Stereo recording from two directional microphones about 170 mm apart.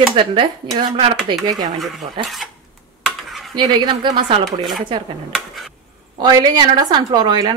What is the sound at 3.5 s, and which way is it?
Speech, 25° right (ahead or behind).